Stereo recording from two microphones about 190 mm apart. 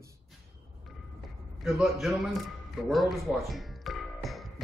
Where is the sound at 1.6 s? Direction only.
Centre (ahead or behind).